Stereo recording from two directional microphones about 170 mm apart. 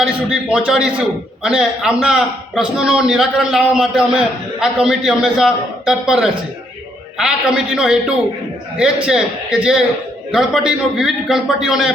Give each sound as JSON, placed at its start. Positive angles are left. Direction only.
{"t": 0.0, "sound": "a man's voice", "side_deg": -5}